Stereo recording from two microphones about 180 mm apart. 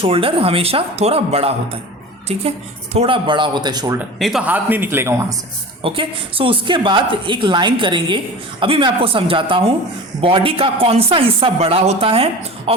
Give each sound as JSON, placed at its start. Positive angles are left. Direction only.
{"t": 0.0, "sound": "a woman's voice", "side_deg": -30}
{"t": 4.2, "sound": "speech", "side_deg": 0}
{"t": 5.8, "sound": "a woman's voice", "side_deg": -30}